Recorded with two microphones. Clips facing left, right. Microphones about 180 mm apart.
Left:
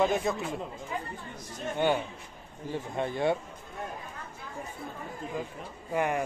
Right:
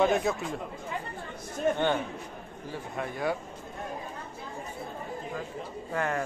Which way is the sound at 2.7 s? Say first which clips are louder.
Left 4 dB; 25° left (ahead or behind).